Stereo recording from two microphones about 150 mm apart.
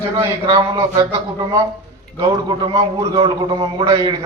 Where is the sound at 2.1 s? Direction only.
25° right (ahead or behind).